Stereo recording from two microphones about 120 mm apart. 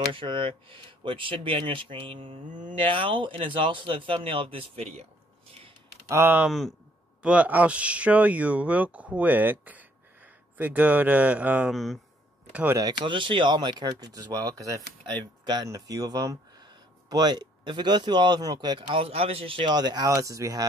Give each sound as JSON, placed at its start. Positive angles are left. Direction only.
{"t": 0.1, "sound": "speech", "side_deg": -45}
{"t": 6.0, "sound": "speech", "side_deg": -20}
{"t": 11.7, "sound": "speech", "side_deg": 0}
{"t": 12.7, "sound": "speech", "side_deg": -35}
{"t": 18.9, "sound": "speech", "side_deg": -55}